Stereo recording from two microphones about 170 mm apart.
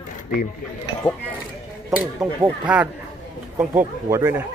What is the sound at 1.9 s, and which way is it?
Speech, 10° right (ahead or behind).